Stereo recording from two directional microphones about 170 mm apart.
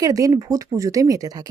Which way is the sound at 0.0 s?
20° right (ahead or behind).